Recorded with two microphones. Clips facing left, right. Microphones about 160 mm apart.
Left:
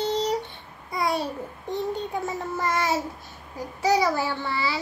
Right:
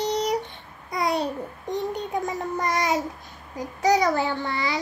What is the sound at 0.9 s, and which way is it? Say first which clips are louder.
A child's voice: right 1 dB; 20° right (ahead or behind).